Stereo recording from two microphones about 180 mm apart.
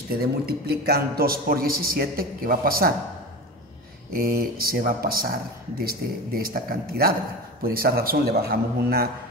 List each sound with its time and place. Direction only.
0.2 s a man's voice: 60° right (ahead or behind)
4.1 s a man's voice: 55° right (ahead or behind)